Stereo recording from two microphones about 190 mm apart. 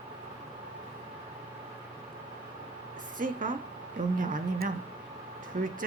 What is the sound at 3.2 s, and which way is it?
A woman's voice, 45° right (ahead or behind).